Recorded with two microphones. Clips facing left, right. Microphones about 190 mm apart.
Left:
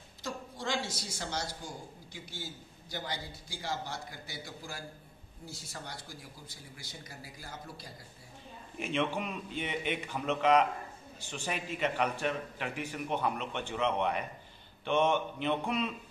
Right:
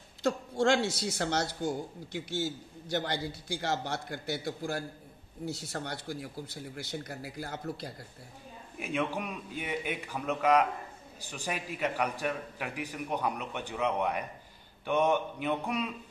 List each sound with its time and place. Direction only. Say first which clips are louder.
0.2 s speech: right 11 dB; 65° right (ahead or behind)
2.1 s a man's voice: right 12 dB; 80° right; by 7.9 s 65° right (ahead or behind)
8.7 s a man's voice: even; 5° right (ahead or behind)